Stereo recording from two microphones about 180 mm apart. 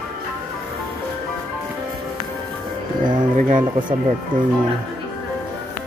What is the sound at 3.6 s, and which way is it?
Speech, 25° right (ahead or behind).